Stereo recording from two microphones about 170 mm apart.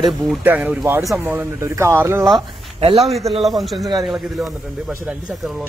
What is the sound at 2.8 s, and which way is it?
Speech, 35° right (ahead or behind).